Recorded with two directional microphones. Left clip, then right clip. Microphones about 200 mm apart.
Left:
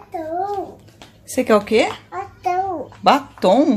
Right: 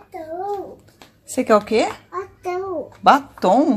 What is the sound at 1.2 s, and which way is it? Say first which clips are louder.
Speech: even; centre (ahead or behind).